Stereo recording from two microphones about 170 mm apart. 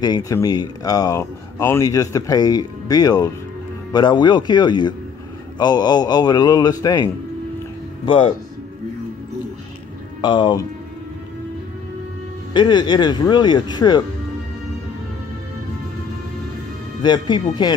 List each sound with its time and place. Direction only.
0.0 s speech: 20° left (ahead or behind)
10.2 s speech: 25° left (ahead or behind)
12.5 s speech: 25° left (ahead or behind)
17.0 s speech: 25° left (ahead or behind)